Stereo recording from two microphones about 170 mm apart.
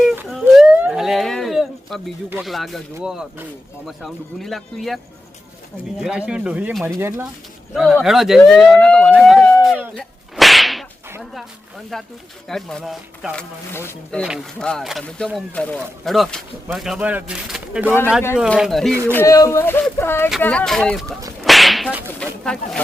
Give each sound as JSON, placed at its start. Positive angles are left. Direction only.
{"t": 0.3, "sound": "a sound", "side_deg": 0}
{"t": 2.4, "sound": "speech", "side_deg": 0}
{"t": 6.0, "sound": "speech", "side_deg": -5}
{"t": 7.7, "sound": "speech", "side_deg": 0}
{"t": 12.5, "sound": "speech", "side_deg": 0}
{"t": 13.7, "sound": "speech", "side_deg": 15}
{"t": 14.2, "sound": "speech", "side_deg": 5}
{"t": 19.1, "sound": "speech", "side_deg": 20}
{"t": 21.4, "sound": "whip", "side_deg": 0}